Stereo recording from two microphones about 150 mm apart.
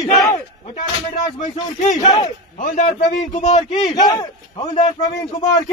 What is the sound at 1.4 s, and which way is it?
Speech, 60° left (ahead or behind).